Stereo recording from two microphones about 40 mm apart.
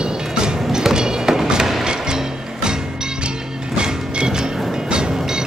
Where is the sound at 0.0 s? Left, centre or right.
Right.